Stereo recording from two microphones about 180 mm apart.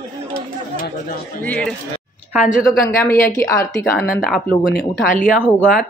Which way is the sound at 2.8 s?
15° left (ahead or behind).